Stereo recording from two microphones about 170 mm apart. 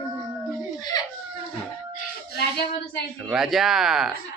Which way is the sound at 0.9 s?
25° left (ahead or behind).